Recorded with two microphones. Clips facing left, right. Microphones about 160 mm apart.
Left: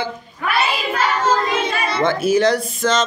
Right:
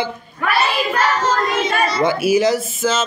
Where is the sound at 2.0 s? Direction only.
10° right (ahead or behind).